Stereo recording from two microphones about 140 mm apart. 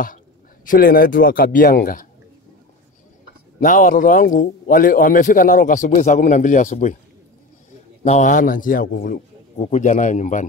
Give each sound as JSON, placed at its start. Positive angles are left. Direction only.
{"t": 0.7, "sound": "speech", "side_deg": 85}
{"t": 3.6, "sound": "a man's voice", "side_deg": 65}
{"t": 8.0, "sound": "a man's voice", "side_deg": 55}
{"t": 9.6, "sound": "a man's voice", "side_deg": 55}